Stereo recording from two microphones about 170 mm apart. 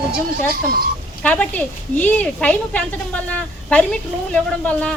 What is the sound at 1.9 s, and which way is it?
A woman's voice, 10° left (ahead or behind).